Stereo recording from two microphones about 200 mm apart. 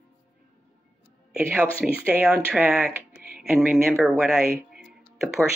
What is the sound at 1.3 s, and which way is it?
Speech, 5° right (ahead or behind).